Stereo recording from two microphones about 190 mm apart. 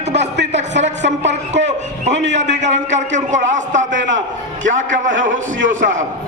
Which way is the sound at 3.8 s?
80° right.